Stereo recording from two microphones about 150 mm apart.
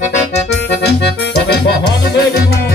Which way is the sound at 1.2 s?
90° left.